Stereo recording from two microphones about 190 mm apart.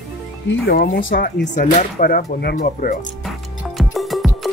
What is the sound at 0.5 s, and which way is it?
Speech, 55° left (ahead or behind).